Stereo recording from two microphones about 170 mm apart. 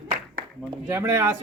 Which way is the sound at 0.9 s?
15° right (ahead or behind).